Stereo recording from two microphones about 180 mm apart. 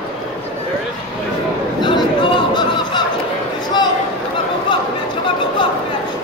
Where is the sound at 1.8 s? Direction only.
25° left (ahead or behind).